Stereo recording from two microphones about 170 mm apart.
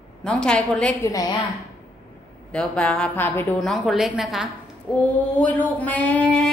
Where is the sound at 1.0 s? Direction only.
20° left (ahead or behind).